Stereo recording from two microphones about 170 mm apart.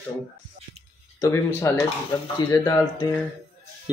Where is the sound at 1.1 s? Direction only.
15° left (ahead or behind).